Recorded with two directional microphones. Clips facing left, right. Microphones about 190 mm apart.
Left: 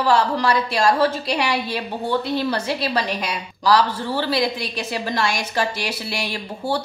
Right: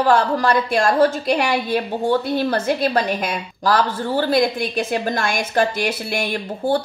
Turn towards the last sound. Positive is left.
turn(degrees=-50)  # may be behind; listen again after turning